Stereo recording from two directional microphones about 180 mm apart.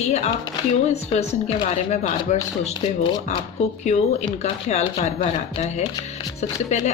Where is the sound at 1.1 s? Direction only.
30° left (ahead or behind).